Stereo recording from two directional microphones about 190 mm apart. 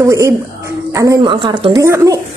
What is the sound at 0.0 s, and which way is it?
Speech, 15° right (ahead or behind).